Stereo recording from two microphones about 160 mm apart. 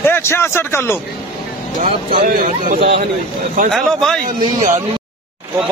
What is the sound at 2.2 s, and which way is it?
Speech, 60° right (ahead or behind).